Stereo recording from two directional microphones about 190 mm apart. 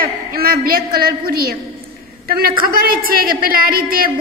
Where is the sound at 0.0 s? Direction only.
50° right (ahead or behind).